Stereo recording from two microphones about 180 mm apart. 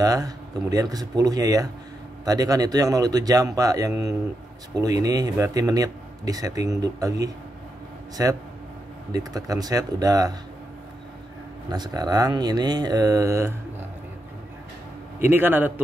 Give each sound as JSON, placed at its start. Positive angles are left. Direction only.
{"t": 0.0, "sound": "a man's voice", "side_deg": -20}
{"t": 11.7, "sound": "speech", "side_deg": -25}
{"t": 15.1, "sound": "a man's voice", "side_deg": -10}